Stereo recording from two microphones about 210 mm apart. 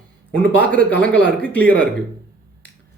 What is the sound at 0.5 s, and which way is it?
Speech, 5° left (ahead or behind).